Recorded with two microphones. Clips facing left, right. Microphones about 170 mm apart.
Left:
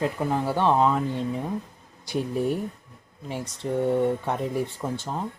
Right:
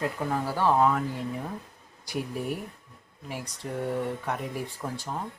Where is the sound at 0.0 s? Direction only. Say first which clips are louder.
Left 4 dB; 20° left (ahead or behind).